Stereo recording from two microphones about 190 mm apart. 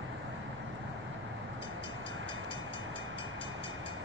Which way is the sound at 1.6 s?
25° left (ahead or behind).